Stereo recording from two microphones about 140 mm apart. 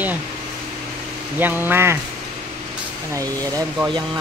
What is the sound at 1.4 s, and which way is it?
Speech, 15° right (ahead or behind).